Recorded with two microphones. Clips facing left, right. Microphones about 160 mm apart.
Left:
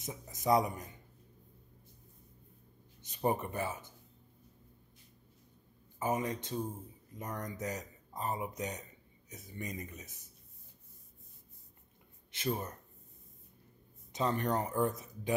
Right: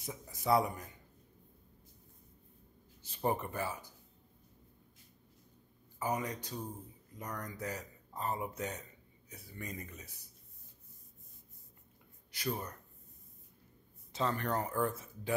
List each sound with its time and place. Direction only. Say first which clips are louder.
0.0 s a man's voice: left 2 dB; 20° left (ahead or behind)
3.0 s speech: left 2 dB; 20° left (ahead or behind)
5.9 s speech: left 2 dB; 20° left (ahead or behind)
12.3 s speech: left 2 dB; 25° left (ahead or behind)
14.1 s speech: left 2 dB; 20° left (ahead or behind)